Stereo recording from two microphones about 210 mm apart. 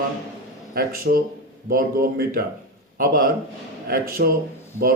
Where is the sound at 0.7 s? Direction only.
45° right (ahead or behind).